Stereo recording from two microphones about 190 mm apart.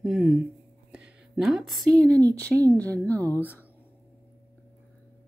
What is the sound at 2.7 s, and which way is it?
Speech, 5° left (ahead or behind).